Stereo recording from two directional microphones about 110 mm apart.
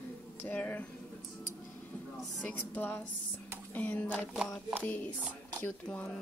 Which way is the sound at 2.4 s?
15° left (ahead or behind).